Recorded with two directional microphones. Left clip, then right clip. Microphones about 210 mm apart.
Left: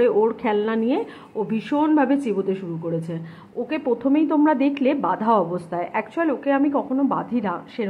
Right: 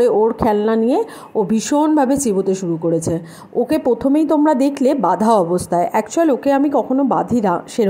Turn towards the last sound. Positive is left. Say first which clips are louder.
# right 9 dB
turn(degrees=-50)  # may be behind; listen again after turning